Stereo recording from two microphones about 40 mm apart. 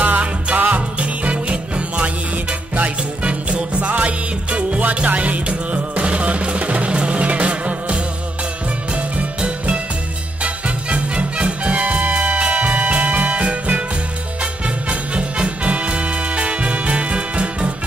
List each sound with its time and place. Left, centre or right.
0.0 s music: right
10.4 s music: right